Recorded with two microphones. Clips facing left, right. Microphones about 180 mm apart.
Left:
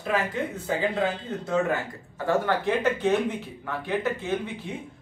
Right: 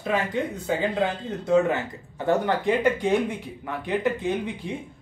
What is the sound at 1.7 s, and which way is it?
Speech, 20° right (ahead or behind).